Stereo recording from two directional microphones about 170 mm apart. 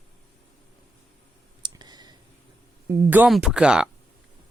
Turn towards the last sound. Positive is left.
turn(degrees=-5)  # may be behind; listen again after turning